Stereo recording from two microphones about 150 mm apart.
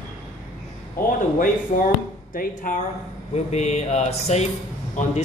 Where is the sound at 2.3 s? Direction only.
70° left (ahead or behind).